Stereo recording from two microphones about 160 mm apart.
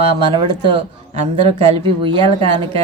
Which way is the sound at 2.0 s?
30° right (ahead or behind).